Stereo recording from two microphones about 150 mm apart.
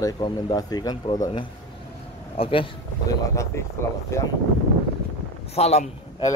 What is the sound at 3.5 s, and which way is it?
Speech, 20° left (ahead or behind).